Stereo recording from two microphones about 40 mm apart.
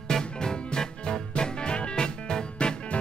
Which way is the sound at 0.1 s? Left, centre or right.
Centre.